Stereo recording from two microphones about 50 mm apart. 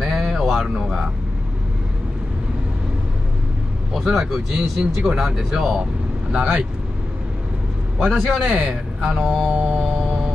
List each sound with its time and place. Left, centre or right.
0.0 s a sound: centre
4.1 s speech: centre
8.0 s speech: centre
9.5 s music: right
9.8 s music: centre